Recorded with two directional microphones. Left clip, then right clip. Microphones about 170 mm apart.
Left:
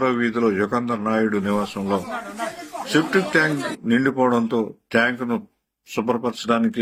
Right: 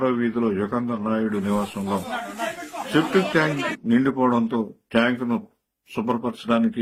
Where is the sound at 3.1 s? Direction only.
Centre (ahead or behind).